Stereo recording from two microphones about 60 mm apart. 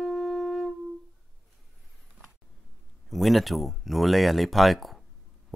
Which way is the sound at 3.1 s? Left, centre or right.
Centre.